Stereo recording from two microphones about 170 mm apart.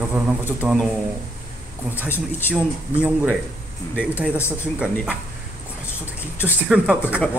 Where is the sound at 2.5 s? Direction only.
10° right (ahead or behind).